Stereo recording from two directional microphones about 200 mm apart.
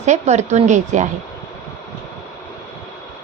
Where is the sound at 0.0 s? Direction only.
35° right (ahead or behind).